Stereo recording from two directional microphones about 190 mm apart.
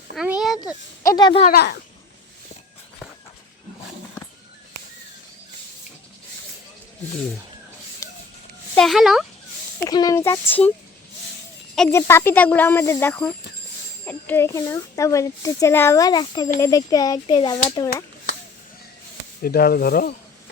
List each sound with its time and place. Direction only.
0.2 s a sound: 5° right (ahead or behind)
1.0 s speech: 20° left (ahead or behind)
1.5 s speech: 55° left (ahead or behind)
8.0 s a sound: 15° left (ahead or behind)
8.7 s speech: centre (ahead or behind)
9.8 s speech: 20° left (ahead or behind)
11.9 s speech: 15° left (ahead or behind)
17.8 s a sound: 55° left (ahead or behind)
19.4 s speech: 55° left (ahead or behind)